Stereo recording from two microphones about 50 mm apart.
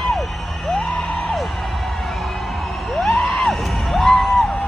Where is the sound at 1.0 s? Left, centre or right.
Left.